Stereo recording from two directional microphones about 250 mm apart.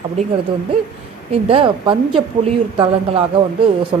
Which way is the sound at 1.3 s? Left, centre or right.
Right.